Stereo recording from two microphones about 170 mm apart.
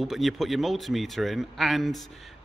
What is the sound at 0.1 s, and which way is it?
A man's voice, centre (ahead or behind).